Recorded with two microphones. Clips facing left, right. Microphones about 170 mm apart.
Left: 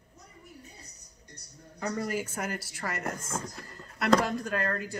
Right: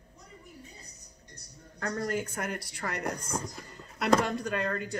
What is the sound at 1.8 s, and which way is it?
A woman's voice, 5° left (ahead or behind).